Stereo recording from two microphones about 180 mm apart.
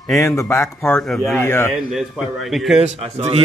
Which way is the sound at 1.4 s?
15° left (ahead or behind).